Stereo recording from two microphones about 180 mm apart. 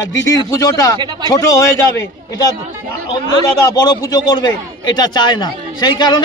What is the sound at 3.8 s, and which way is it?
A man's voice, 20° left (ahead or behind).